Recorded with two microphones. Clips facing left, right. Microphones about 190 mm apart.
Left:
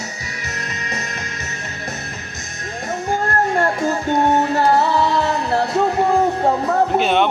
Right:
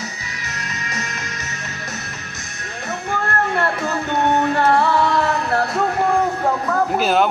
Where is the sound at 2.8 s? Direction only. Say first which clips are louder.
Left 3 dB; 30° left (ahead or behind).